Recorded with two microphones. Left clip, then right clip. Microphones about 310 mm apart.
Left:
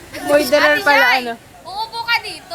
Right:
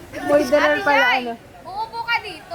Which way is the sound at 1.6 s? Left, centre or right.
Centre.